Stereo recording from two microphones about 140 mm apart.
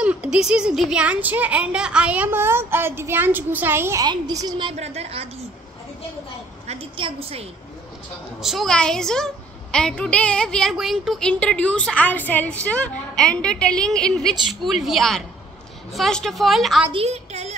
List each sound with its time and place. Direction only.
0.0 s speech: 10° right (ahead or behind)
4.0 s a woman's voice: 25° right (ahead or behind)
4.7 s a woman's voice: 50° right (ahead or behind)
6.7 s a woman's voice: 40° right (ahead or behind)
8.4 s a woman's voice: centre (ahead or behind)
16.9 s a woman's voice: 50° right (ahead or behind)